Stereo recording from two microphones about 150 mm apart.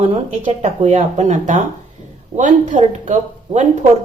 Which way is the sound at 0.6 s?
45° right (ahead or behind).